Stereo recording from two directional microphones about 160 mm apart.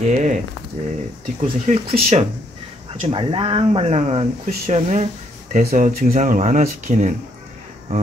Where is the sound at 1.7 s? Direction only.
50° right (ahead or behind).